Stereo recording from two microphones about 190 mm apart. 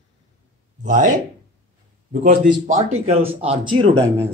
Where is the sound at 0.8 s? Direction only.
45° right (ahead or behind).